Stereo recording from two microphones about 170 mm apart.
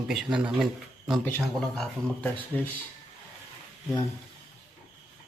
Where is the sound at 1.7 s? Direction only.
10° left (ahead or behind).